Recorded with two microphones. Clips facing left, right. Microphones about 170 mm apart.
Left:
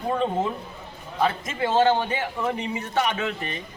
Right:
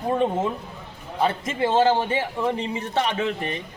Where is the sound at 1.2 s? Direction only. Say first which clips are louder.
Right 2 dB; 30° right (ahead or behind).